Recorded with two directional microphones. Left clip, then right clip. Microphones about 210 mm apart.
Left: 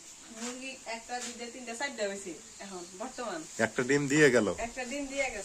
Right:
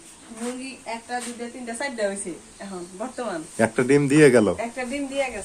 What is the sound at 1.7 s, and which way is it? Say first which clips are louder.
Speech: right 8 dB; 20° right (ahead or behind).